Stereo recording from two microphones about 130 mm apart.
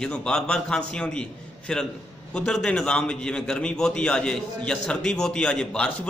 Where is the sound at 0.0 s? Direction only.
5° left (ahead or behind).